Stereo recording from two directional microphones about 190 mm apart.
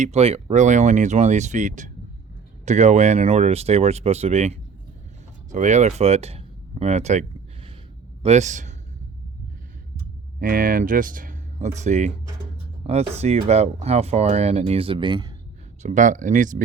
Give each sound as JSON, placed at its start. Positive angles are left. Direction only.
{"t": 0.0, "sound": "speech", "side_deg": -35}
{"t": 10.4, "sound": "speech", "side_deg": -45}
{"t": 13.1, "sound": "speech", "side_deg": -35}
{"t": 15.8, "sound": "speech", "side_deg": -40}